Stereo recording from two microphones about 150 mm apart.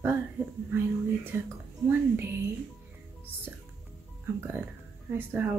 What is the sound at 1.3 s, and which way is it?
Speech, 15° right (ahead or behind).